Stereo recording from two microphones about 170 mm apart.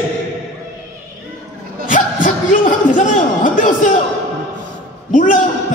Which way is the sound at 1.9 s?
50° left (ahead or behind).